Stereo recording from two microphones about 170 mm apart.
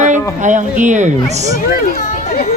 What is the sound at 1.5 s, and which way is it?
Children playing, 50° left (ahead or behind).